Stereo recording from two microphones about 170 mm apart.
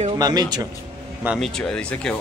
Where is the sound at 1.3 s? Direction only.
Centre (ahead or behind).